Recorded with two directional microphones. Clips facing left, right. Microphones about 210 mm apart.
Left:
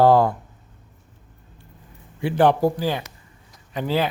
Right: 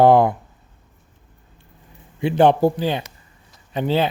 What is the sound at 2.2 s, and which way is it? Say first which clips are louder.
Speech: right 3 dB; 25° right (ahead or behind).